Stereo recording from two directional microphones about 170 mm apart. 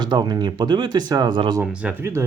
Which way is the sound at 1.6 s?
10° right (ahead or behind).